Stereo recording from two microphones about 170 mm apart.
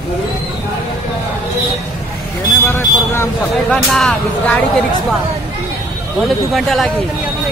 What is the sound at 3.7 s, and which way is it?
Speech, 5° left (ahead or behind).